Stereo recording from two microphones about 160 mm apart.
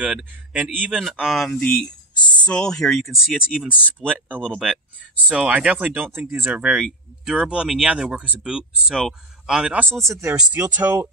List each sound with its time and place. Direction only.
0.0 s speech: 5° right (ahead or behind)
4.4 s speech: 5° left (ahead or behind)
5.3 s speech: 5° right (ahead or behind)
10.0 s speech: 20° right (ahead or behind)